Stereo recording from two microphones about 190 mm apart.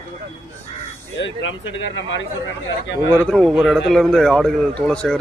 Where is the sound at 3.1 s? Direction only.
5° left (ahead or behind).